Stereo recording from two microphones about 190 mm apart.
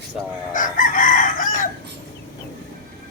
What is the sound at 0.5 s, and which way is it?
Chicken, 45° left (ahead or behind).